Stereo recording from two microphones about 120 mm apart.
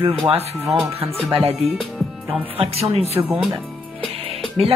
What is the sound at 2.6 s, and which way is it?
Speech, 55° right (ahead or behind).